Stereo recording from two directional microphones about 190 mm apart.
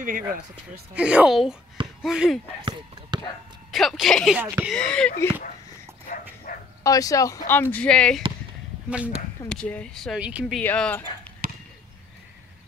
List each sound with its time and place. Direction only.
0.0 s speech: 45° right (ahead or behind)
0.9 s speech: 5° right (ahead or behind)
3.1 s a sound: 25° right (ahead or behind)
3.7 s speech: centre (ahead or behind)
4.7 s speech: 5° left (ahead or behind)
6.5 s bow-wow: 45° left (ahead or behind)
6.8 s speech: 20° left (ahead or behind)
8.9 s speech: 5° right (ahead or behind)
9.5 s speech: 5° left (ahead or behind)
10.6 s speech: 10° left (ahead or behind)
11.4 s basketball bounce: 45° right (ahead or behind)